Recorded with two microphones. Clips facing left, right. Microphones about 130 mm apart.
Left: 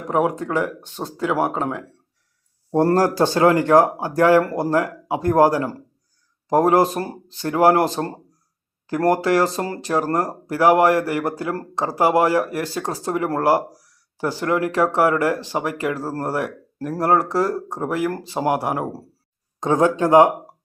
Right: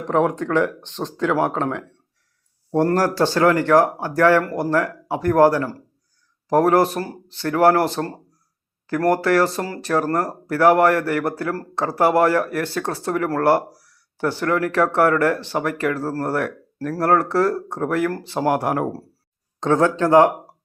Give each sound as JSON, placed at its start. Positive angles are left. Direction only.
{"t": 0.1, "sound": "speech", "side_deg": 10}
{"t": 2.7, "sound": "speech", "side_deg": 20}